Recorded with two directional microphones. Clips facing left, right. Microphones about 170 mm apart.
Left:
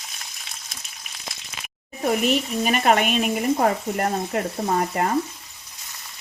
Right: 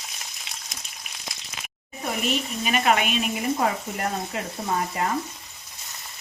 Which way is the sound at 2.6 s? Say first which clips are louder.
Left 2 dB; 45° left (ahead or behind).